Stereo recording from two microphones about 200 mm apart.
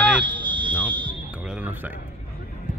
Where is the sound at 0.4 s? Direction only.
25° right (ahead or behind).